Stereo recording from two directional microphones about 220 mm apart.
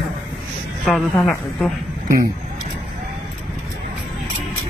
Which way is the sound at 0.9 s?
Centre (ahead or behind).